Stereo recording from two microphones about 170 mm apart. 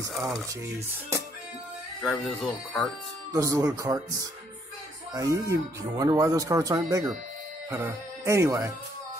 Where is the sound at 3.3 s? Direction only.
20° right (ahead or behind).